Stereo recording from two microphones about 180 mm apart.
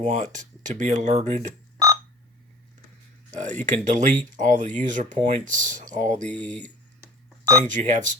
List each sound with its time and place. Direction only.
0.0 s speech: 45° right (ahead or behind)
3.3 s speech: 40° right (ahead or behind)
6.2 s speech: 10° left (ahead or behind)
7.7 s speech: 40° right (ahead or behind)